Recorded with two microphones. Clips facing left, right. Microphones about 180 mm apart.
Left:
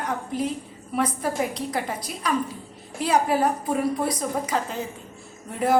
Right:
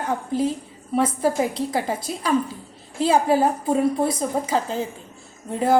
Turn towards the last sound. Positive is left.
turn(degrees=-30)  # may be behind; listen again after turning